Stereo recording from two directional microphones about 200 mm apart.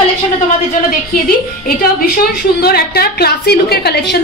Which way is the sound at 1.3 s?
50° left (ahead or behind).